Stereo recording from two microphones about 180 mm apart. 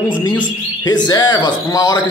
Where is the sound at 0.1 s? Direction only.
25° left (ahead or behind).